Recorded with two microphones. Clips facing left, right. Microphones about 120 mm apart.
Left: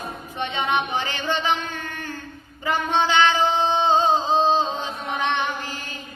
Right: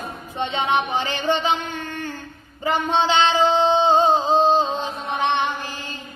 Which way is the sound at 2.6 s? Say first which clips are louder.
Right 2 dB; 20° right (ahead or behind).